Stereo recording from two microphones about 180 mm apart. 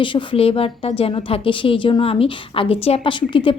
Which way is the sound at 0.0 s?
25° left (ahead or behind).